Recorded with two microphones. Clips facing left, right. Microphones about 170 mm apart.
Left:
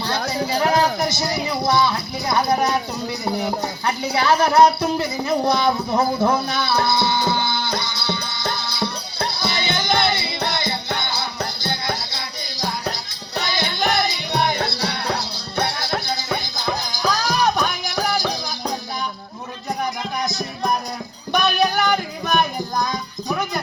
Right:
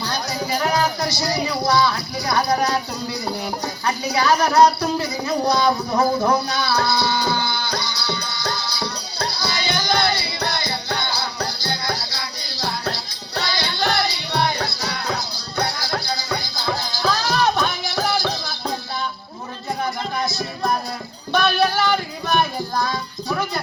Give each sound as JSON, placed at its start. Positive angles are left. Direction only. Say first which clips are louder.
{"t": 0.3, "sound": "speech", "louder": "left 2 dB", "side_deg": 25}
{"t": 3.4, "sound": "a sound", "louder": "left 2 dB", "side_deg": 25}
{"t": 20.2, "sound": "music", "louder": "left 1 dB", "side_deg": 15}